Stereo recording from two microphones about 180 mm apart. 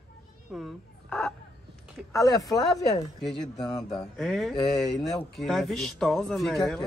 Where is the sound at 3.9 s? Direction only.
Centre (ahead or behind).